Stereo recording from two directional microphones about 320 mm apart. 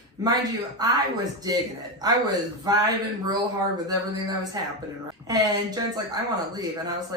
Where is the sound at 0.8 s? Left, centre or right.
Centre.